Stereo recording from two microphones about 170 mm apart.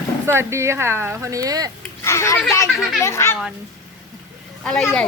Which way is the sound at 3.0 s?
15° left (ahead or behind).